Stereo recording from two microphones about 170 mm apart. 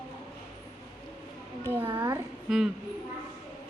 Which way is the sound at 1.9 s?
20° right (ahead or behind).